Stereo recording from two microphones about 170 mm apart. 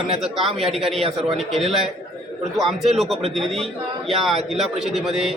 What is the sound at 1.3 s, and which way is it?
A man's voice, centre (ahead or behind).